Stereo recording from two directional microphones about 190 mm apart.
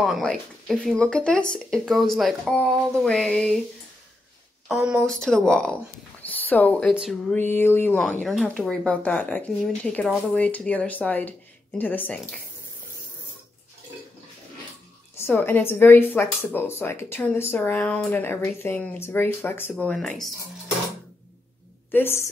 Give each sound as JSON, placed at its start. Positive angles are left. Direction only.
{"t": 0.0, "sound": "speech", "side_deg": 0}
{"t": 4.6, "sound": "speech", "side_deg": -5}
{"t": 15.1, "sound": "speech", "side_deg": 10}
{"t": 21.9, "sound": "speech", "side_deg": 10}